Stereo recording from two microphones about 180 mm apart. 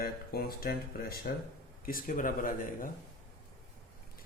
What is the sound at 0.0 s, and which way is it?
Speech, 60° left (ahead or behind).